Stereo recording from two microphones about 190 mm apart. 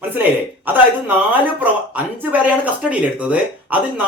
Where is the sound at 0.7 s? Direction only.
10° right (ahead or behind).